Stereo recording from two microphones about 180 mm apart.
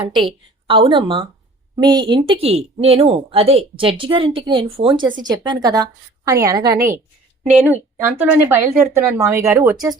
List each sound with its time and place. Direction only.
0.0 s a woman's voice: centre (ahead or behind)
0.7 s a woman's voice: 30° right (ahead or behind)